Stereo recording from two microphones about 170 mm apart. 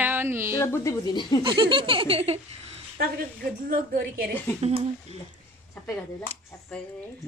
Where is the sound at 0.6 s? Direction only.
15° left (ahead or behind).